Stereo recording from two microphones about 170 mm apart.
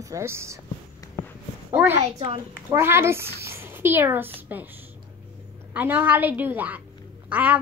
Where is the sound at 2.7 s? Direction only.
15° right (ahead or behind).